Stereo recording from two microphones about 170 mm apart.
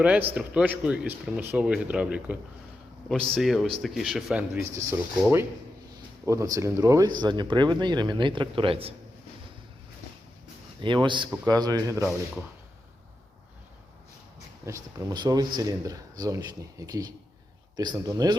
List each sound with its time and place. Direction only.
0.0 s a man's voice: 10° right (ahead or behind)
4.5 s speech: 15° right (ahead or behind)
6.2 s speech: 20° right (ahead or behind)
10.8 s speech: 30° right (ahead or behind)
14.9 s speech: 25° right (ahead or behind)